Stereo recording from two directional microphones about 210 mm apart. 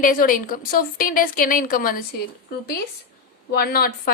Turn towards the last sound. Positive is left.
turn(degrees=45)  # may be behind; listen again after turning